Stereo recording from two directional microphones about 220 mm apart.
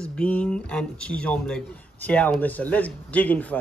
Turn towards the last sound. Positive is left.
turn(degrees=5)  # may be behind; listen again after turning